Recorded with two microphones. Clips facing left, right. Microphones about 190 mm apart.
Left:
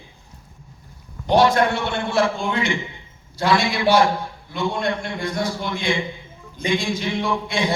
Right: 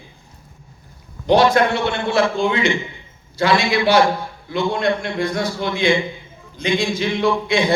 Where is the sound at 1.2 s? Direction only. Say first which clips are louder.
Right 2 dB; 90° right.